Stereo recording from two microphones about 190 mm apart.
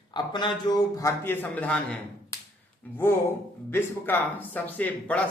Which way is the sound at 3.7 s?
10° left (ahead or behind).